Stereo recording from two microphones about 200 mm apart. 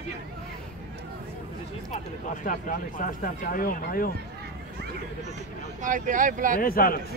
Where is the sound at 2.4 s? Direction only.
40° left (ahead or behind).